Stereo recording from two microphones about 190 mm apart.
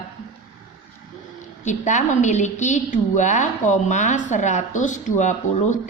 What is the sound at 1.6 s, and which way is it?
A woman's voice, 40° left (ahead or behind).